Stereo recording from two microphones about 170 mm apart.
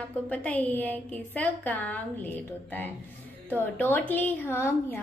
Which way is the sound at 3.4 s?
10° left (ahead or behind).